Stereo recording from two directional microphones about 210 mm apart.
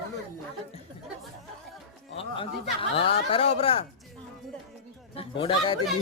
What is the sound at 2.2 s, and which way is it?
Speech, 25° left (ahead or behind).